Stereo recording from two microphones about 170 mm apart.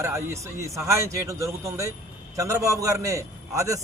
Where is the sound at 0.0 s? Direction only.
15° right (ahead or behind).